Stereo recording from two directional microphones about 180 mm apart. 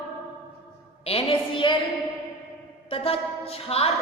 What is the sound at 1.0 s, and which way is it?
Speech, 30° left (ahead or behind).